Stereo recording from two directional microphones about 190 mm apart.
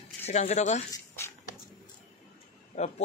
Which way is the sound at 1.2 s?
15° left (ahead or behind).